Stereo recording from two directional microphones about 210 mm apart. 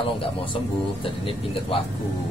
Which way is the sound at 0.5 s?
25° left (ahead or behind).